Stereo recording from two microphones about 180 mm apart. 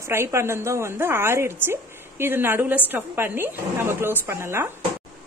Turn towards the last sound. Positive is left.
turn(degrees=-15)  # may be behind; listen again after turning